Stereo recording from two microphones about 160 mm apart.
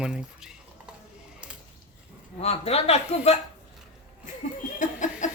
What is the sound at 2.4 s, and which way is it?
Speech, 40° left (ahead or behind).